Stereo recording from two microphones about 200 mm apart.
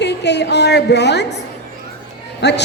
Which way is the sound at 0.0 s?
60° left (ahead or behind).